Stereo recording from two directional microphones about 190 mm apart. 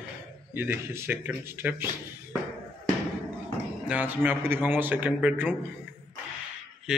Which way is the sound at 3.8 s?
10° right (ahead or behind).